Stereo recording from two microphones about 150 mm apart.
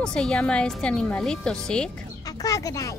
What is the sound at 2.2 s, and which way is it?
Speech, 25° left (ahead or behind).